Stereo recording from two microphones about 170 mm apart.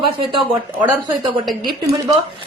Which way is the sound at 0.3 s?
30° right (ahead or behind).